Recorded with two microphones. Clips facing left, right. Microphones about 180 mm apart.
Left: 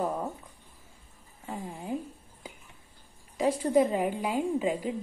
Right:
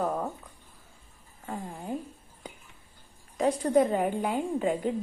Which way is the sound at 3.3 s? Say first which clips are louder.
Right 1 dB; 5° left (ahead or behind).